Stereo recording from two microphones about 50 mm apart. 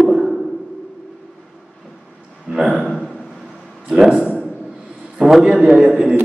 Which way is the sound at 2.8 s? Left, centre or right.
Centre.